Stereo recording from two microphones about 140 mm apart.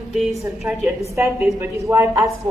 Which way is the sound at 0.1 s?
Centre (ahead or behind).